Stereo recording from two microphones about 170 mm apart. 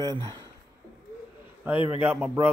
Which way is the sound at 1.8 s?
10° right (ahead or behind).